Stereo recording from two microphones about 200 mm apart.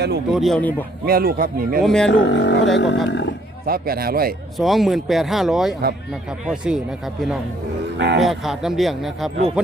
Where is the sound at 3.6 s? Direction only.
50° right (ahead or behind).